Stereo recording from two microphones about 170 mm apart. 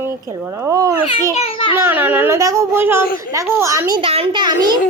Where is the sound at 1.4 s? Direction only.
35° left (ahead or behind).